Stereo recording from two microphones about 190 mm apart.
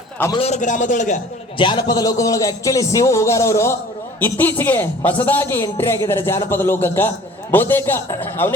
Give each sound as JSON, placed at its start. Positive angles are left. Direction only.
{"t": 0.3, "sound": "speech", "side_deg": 35}
{"t": 1.5, "sound": "a man's voice", "side_deg": 25}